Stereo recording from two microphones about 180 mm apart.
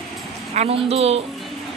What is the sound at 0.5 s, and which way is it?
Speech, 35° right (ahead or behind).